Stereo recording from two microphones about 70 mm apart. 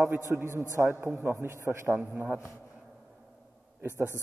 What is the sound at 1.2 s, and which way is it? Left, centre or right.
Speech, right.